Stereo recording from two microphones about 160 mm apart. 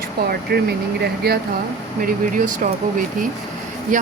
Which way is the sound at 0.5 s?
80° right.